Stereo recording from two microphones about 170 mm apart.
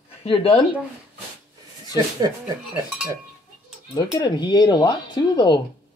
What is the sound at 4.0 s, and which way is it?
Speech, 25° left (ahead or behind).